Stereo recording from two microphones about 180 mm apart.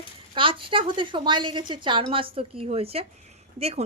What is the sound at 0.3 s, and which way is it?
A woman's voice, 30° right (ahead or behind).